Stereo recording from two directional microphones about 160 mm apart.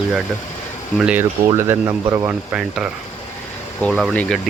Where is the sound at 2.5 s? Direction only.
5° right (ahead or behind).